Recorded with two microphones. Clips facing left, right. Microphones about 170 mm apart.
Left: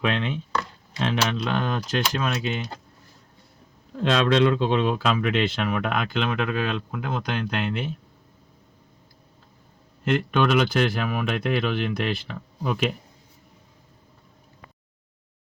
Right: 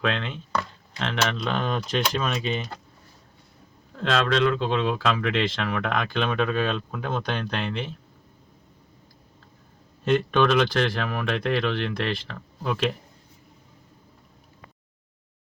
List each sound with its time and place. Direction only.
0.0 s speech: 10° left (ahead or behind)
3.9 s speech: 15° left (ahead or behind)
10.3 s speech: 10° left (ahead or behind)